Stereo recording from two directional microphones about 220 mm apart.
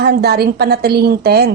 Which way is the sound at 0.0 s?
45° right (ahead or behind).